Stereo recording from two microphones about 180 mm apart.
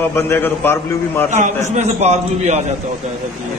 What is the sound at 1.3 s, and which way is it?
A man's voice, 45° right (ahead or behind).